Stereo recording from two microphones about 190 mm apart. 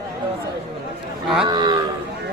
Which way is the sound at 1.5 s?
20° right (ahead or behind).